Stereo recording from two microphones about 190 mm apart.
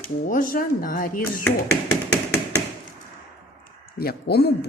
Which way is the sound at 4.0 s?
55° left (ahead or behind).